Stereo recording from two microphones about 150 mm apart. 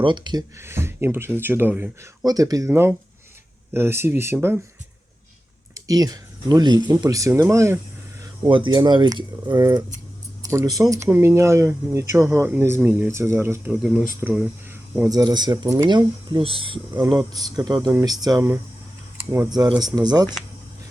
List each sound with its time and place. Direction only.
0.0 s speech: 30° right (ahead or behind)
0.6 s speech: 15° right (ahead or behind)
2.2 s speech: 25° right (ahead or behind)
5.7 s speech: 25° right (ahead or behind)
8.4 s speech: 35° right (ahead or behind)
17.0 s speech: 20° right (ahead or behind)